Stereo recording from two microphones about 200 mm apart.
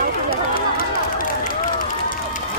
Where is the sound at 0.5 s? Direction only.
45° left (ahead or behind).